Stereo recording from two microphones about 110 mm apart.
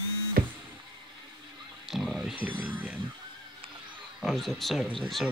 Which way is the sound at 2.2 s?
10° right (ahead or behind).